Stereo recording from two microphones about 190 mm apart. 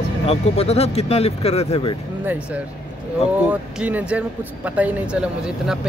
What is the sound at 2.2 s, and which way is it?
Speech, 10° right (ahead or behind).